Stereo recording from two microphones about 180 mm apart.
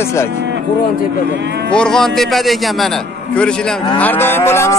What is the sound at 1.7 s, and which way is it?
Speech, 5° left (ahead or behind).